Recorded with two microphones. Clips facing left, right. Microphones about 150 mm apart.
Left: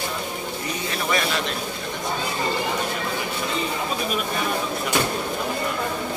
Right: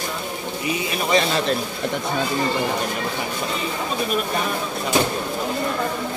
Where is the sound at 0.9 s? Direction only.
20° right (ahead or behind).